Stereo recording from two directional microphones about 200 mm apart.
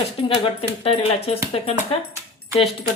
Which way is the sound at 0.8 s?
30° left (ahead or behind).